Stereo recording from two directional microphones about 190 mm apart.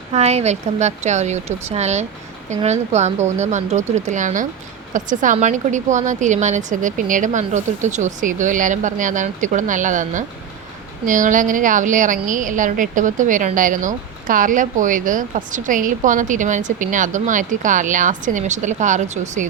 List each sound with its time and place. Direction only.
0.1 s a woman's voice: 35° right (ahead or behind)